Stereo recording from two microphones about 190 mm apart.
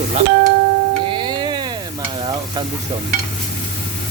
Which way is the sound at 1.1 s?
25° right (ahead or behind).